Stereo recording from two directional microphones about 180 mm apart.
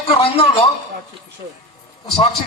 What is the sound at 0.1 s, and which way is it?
Speech, 35° left (ahead or behind).